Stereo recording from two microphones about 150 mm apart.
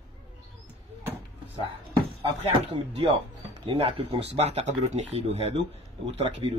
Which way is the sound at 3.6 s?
40° right (ahead or behind).